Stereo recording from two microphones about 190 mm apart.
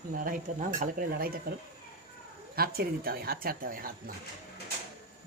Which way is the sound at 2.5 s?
50° right (ahead or behind).